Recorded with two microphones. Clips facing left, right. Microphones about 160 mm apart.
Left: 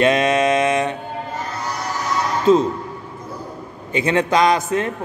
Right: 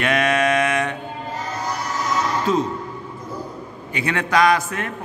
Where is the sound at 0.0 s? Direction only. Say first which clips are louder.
Left 4 dB; 25° left (ahead or behind).